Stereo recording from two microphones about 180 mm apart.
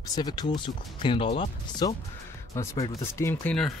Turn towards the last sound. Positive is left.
turn(degrees=15)  # may be behind; listen again after turning